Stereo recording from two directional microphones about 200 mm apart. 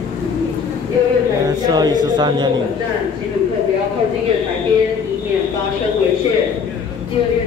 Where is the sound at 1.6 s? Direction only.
20° right (ahead or behind).